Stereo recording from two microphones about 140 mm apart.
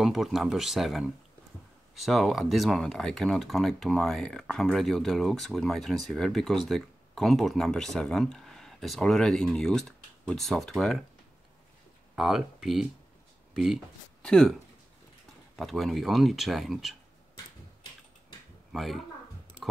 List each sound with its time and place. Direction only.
0.0 s speech: centre (ahead or behind)
12.2 s speech: centre (ahead or behind)
14.2 s speech: 5° left (ahead or behind)
18.7 s speech: centre (ahead or behind)